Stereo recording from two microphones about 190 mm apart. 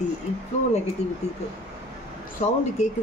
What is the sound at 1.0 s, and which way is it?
Speech, 35° left (ahead or behind).